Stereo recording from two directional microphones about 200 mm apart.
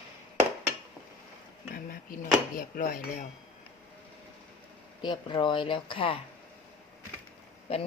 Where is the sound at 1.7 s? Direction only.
45° left (ahead or behind).